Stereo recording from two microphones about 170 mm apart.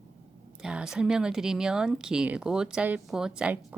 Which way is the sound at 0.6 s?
5° right (ahead or behind).